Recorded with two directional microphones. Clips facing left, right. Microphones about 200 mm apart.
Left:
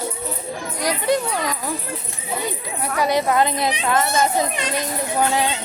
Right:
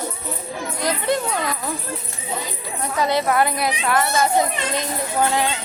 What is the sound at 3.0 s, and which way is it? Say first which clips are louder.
A child's voice: left 1 dB; 15° left (ahead or behind).